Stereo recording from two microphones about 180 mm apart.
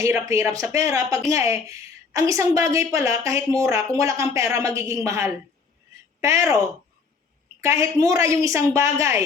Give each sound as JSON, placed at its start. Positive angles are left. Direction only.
{"t": 0.0, "sound": "a woman's voice", "side_deg": -15}
{"t": 7.6, "sound": "speech", "side_deg": -15}